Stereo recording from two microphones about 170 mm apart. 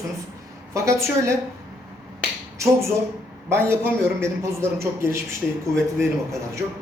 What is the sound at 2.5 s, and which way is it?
A man's voice, 15° right (ahead or behind).